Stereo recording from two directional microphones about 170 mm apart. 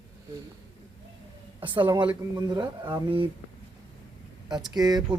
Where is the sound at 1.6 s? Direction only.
30° right (ahead or behind).